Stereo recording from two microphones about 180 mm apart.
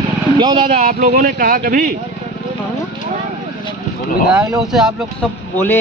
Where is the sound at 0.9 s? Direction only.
55° right (ahead or behind).